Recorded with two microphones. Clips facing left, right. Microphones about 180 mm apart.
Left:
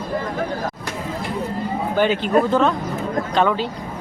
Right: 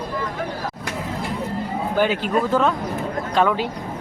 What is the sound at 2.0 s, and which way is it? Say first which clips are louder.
A man's voice: left 3 dB; 5° right (ahead or behind).